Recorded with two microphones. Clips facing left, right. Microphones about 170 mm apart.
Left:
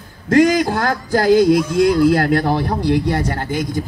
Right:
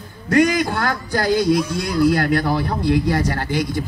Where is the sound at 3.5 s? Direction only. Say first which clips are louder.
Even; 45° left (ahead or behind).